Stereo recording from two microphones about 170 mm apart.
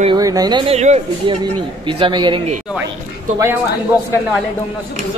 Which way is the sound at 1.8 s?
30° right (ahead or behind).